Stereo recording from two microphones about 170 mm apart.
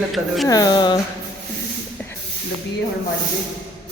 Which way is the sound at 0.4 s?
20° left (ahead or behind).